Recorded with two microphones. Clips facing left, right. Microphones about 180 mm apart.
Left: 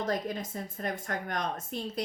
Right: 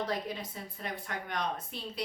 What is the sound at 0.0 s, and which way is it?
Speech, 45° left (ahead or behind).